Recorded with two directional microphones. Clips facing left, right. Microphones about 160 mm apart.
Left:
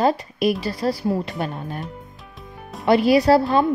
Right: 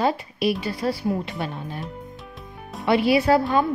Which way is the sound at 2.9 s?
40° left (ahead or behind).